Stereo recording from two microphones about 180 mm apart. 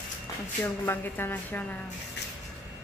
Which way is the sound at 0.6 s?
10° left (ahead or behind).